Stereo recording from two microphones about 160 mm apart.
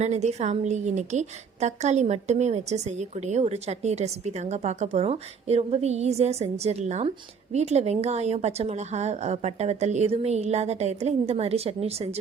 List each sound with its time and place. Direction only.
0.0 s a woman's voice: 45° right (ahead or behind)